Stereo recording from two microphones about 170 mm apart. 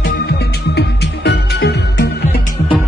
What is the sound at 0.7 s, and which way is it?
Music, 85° left.